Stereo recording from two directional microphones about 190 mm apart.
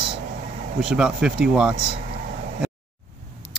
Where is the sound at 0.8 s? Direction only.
5° right (ahead or behind).